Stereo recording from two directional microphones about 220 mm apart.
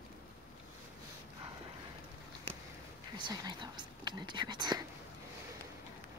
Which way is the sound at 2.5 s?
25° right (ahead or behind).